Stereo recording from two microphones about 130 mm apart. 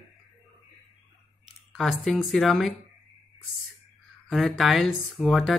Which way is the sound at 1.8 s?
Centre (ahead or behind).